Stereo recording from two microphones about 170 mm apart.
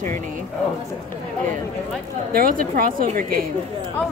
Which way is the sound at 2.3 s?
55° right (ahead or behind).